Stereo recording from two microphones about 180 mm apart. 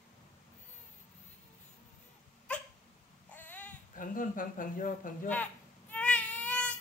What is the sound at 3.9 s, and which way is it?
Speech, 50° left (ahead or behind).